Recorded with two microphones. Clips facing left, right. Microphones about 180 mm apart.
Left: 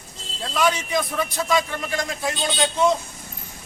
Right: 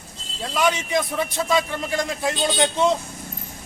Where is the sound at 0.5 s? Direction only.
20° right (ahead or behind).